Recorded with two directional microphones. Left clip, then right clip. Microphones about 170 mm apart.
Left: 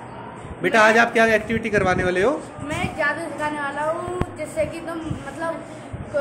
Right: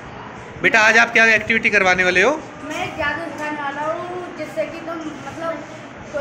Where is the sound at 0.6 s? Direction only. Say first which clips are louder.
Right 2 dB; 15° left (ahead or behind).